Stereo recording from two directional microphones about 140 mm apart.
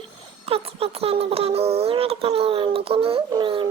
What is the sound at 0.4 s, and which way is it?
A child's voice, 45° right (ahead or behind).